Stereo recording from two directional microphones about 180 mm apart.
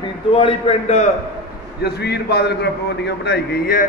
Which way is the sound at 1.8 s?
65° left (ahead or behind).